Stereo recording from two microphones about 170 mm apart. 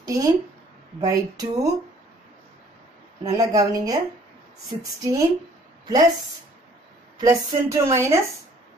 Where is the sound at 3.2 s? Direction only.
20° right (ahead or behind).